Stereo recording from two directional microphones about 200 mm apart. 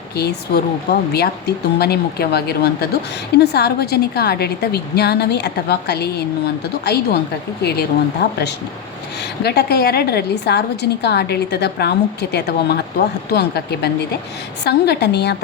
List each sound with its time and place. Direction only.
0.2 s a woman's voice: 55° left (ahead or behind)